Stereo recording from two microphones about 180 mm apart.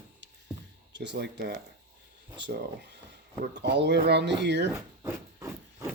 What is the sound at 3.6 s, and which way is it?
Speech, 70° right (ahead or behind).